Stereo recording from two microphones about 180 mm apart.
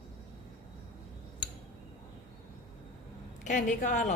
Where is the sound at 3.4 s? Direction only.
45° left (ahead or behind).